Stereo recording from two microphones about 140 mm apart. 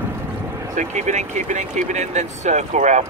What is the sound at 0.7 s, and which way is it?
Speech, 60° right (ahead or behind).